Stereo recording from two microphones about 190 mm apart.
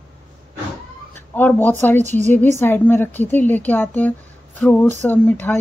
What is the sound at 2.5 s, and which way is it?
Speech, 10° left (ahead or behind).